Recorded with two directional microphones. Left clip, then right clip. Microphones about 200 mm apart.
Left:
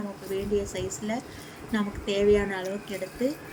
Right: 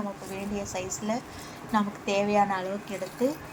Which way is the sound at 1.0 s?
20° right (ahead or behind).